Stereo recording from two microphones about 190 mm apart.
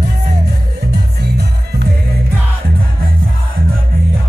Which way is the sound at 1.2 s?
60° right (ahead or behind).